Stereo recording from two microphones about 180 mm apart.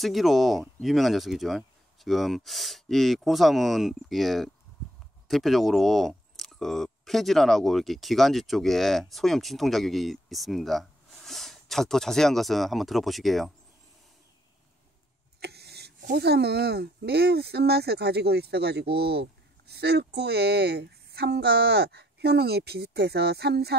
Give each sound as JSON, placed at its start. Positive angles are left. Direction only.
{"t": 0.0, "sound": "speech", "side_deg": 0}
{"t": 15.4, "sound": "speech", "side_deg": -65}